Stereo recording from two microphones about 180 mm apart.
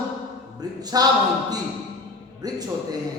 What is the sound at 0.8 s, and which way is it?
Speech, 20° right (ahead or behind).